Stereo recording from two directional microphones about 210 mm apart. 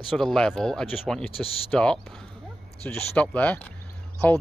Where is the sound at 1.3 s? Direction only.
25° left (ahead or behind).